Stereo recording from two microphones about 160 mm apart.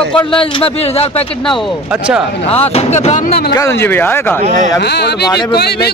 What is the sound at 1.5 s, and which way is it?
Speech, centre (ahead or behind).